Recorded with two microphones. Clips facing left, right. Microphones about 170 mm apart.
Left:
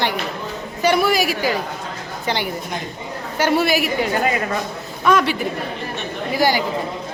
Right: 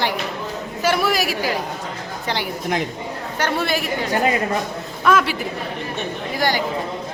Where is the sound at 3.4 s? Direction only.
10° left (ahead or behind).